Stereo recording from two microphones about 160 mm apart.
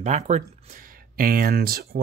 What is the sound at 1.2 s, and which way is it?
Speech, 65° right (ahead or behind).